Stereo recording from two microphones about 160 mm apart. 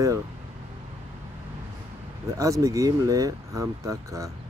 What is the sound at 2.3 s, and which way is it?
Speech, 20° right (ahead or behind).